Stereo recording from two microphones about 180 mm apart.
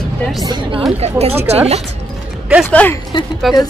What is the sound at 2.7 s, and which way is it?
Speech, 10° left (ahead or behind).